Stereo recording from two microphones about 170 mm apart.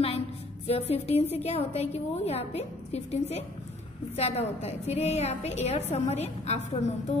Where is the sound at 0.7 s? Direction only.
35° left (ahead or behind).